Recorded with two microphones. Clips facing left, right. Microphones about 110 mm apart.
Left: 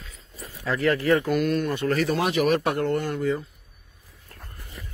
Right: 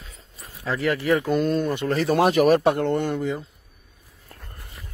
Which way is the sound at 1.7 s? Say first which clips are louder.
Even; 20° right (ahead or behind).